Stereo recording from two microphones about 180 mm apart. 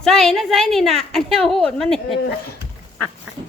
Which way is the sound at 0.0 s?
Centre (ahead or behind).